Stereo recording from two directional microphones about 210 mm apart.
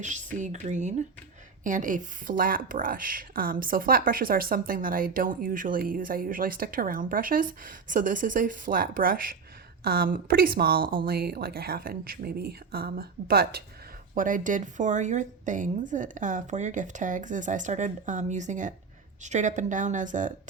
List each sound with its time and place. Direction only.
0.0 s speech: 35° right (ahead or behind)